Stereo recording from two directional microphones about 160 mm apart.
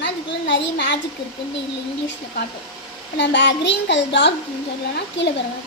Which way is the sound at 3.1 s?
90° left.